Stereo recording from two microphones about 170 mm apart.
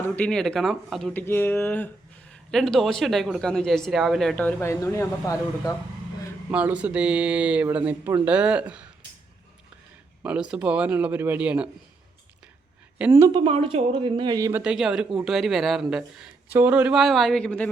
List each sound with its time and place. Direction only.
0.2 s a man's voice: 5° left (ahead or behind)
1.2 s a man's voice: 15° left (ahead or behind)
6.5 s speech: 10° right (ahead or behind)
10.2 s speech: 5° right (ahead or behind)
13.0 s speech: 15° right (ahead or behind)
13.4 s speech: 30° right (ahead or behind)
14.6 s a man's voice: 5° right (ahead or behind)